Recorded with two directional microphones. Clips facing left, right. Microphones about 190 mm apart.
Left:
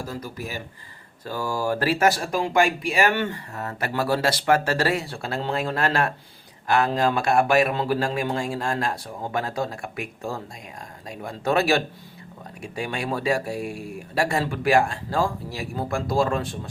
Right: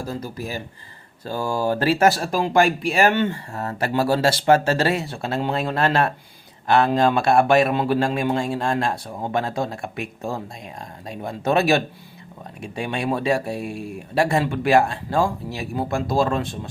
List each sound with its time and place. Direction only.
0.0 s speech: 30° right (ahead or behind)